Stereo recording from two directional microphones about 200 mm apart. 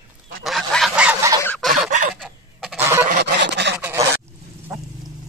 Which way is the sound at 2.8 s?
15° right (ahead or behind).